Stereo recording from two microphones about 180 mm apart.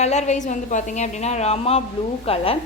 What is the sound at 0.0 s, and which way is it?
A woman's voice, 40° left (ahead or behind).